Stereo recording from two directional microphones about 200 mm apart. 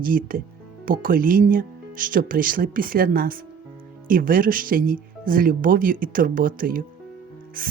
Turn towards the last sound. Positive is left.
turn(degrees=-45)  # may be behind; listen again after turning